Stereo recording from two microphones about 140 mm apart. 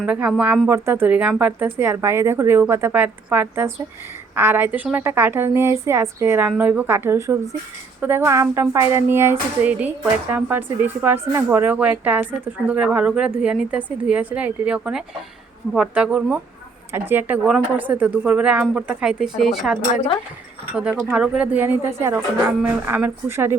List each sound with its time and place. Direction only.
0.0 s a woman's voice: 10° right (ahead or behind)